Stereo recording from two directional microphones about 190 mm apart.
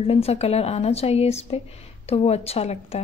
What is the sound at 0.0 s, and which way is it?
Speech, 30° left (ahead or behind).